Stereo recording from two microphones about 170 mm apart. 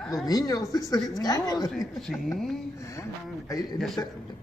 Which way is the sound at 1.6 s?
Centre (ahead or behind).